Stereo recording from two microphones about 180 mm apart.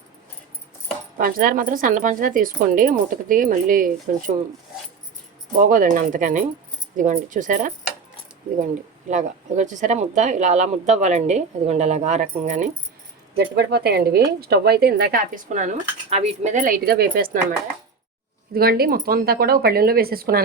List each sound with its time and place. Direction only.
1.2 s speech: 50° right (ahead or behind)
5.6 s speech: 50° right (ahead or behind)
9.0 s speech: 40° right (ahead or behind)
13.3 s speech: 60° right (ahead or behind)
15.4 s speech: 45° right (ahead or behind)
18.5 s speech: 55° right (ahead or behind)